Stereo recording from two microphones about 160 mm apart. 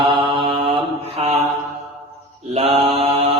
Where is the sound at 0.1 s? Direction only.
30° right (ahead or behind).